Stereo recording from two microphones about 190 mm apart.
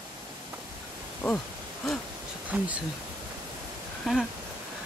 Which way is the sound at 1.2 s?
5° left (ahead or behind).